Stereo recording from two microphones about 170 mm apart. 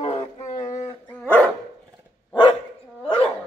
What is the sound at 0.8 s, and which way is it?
Dog, 15° left (ahead or behind).